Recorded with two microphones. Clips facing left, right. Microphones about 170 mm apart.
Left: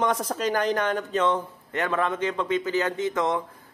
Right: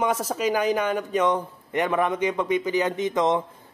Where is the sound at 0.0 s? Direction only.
5° right (ahead or behind).